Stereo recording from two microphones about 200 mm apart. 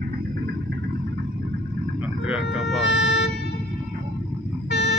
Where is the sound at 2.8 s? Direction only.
60° left (ahead or behind).